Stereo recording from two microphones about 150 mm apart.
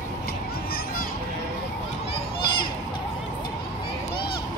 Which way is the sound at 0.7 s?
80° left.